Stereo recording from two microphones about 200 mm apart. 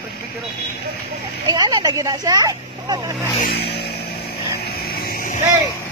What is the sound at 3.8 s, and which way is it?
Vehicle, 50° left (ahead or behind).